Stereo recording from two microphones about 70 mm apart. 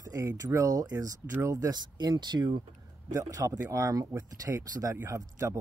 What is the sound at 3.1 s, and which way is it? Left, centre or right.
Speech, right.